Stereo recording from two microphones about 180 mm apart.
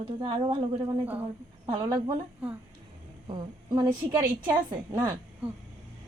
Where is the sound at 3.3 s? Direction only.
20° right (ahead or behind).